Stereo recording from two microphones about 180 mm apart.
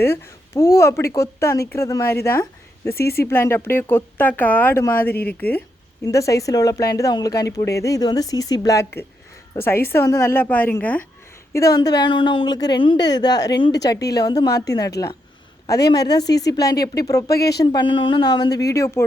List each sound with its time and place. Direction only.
0.0 s speech: 15° left (ahead or behind)
3.0 s speech: 60° left (ahead or behind)
3.2 s speech: 15° left (ahead or behind)
11.5 s speech: 20° left (ahead or behind)
16.5 s speech: 20° left (ahead or behind)